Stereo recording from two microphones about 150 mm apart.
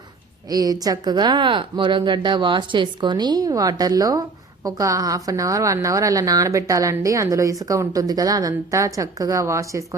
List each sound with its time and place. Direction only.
0.4 s a woman's voice: 25° right (ahead or behind)